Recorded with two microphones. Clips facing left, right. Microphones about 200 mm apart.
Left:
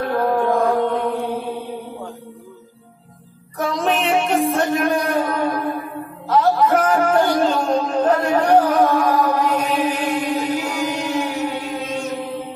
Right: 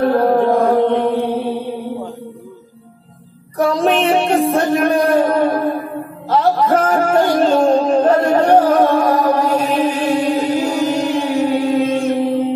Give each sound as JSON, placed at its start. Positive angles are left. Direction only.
{"t": 0.0, "sound": "chant", "side_deg": -40}
{"t": 3.5, "sound": "music", "side_deg": -35}
{"t": 6.3, "sound": "a sound", "side_deg": -30}
{"t": 7.2, "sound": "music", "side_deg": -35}
{"t": 8.0, "sound": "a sound", "side_deg": -45}
{"t": 8.4, "sound": "music", "side_deg": -25}
{"t": 9.4, "sound": "music", "side_deg": -45}
{"t": 11.9, "sound": "chant", "side_deg": -50}